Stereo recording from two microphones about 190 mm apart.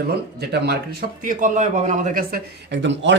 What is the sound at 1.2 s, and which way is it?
A man's voice, 45° right (ahead or behind).